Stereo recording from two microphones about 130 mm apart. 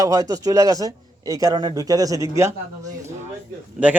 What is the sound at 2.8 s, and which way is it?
Speech, 70° right (ahead or behind).